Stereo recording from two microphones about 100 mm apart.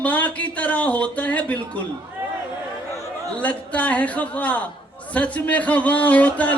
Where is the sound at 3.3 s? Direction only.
15° left (ahead or behind).